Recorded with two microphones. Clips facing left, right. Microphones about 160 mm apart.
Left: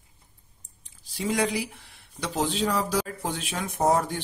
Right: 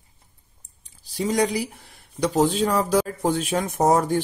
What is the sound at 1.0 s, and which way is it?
Speech, 40° right (ahead or behind).